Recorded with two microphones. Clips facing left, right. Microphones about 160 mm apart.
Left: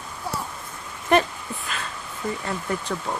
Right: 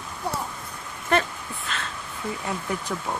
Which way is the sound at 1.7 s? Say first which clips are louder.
Right 1 dB; 5° left (ahead or behind).